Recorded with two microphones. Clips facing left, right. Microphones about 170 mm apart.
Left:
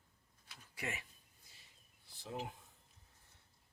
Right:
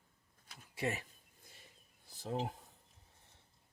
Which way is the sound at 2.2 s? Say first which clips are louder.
Right 6 dB; 40° right (ahead or behind).